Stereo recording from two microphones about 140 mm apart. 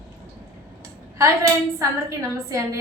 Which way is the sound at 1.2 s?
20° right (ahead or behind).